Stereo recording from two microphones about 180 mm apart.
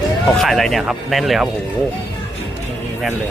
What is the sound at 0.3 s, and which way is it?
Speech, centre (ahead or behind).